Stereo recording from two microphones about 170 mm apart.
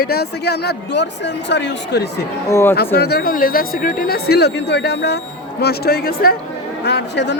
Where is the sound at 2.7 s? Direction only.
70° left (ahead or behind).